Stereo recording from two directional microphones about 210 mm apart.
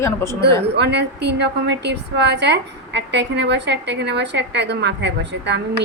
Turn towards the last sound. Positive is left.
turn(degrees=-55)  # may be behind; listen again after turning